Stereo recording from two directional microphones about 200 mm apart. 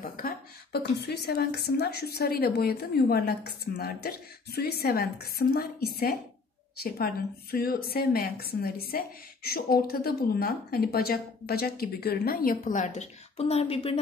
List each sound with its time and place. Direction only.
0.0 s a woman's voice: 50° left (ahead or behind); by 13.9 s 30° left (ahead or behind)